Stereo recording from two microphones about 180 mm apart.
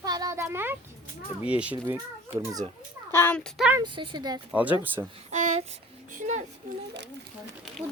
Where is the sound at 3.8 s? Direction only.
25° right (ahead or behind).